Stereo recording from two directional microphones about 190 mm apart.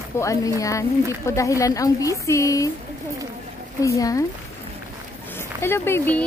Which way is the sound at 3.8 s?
15° left (ahead or behind).